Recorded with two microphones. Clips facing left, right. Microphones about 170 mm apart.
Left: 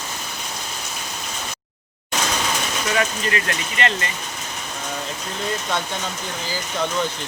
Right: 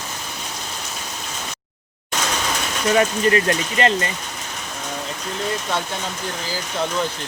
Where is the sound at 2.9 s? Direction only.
35° right (ahead or behind).